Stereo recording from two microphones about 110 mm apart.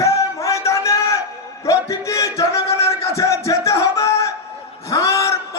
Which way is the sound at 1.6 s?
30° left (ahead or behind).